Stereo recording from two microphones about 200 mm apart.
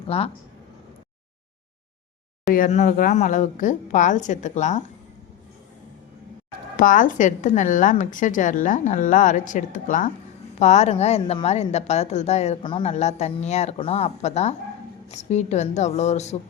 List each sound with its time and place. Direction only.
0.1 s speech: 30° left (ahead or behind)
2.5 s a woman's voice: 40° left (ahead or behind)
6.7 s a woman's voice: 40° left (ahead or behind)